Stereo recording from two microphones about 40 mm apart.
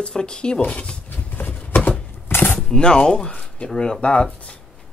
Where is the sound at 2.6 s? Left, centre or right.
Left.